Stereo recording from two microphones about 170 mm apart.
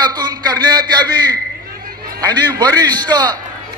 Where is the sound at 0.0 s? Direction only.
25° right (ahead or behind).